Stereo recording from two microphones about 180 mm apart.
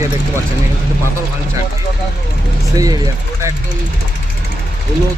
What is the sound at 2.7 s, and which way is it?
Speech, 20° right (ahead or behind).